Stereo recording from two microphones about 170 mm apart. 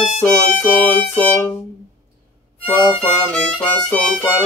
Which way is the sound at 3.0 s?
5° left (ahead or behind).